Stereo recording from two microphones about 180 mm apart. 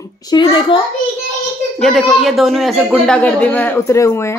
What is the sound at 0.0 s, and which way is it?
Speech, 20° left (ahead or behind).